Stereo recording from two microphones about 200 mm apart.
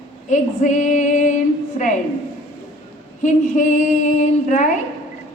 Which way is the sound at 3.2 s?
40° left (ahead or behind).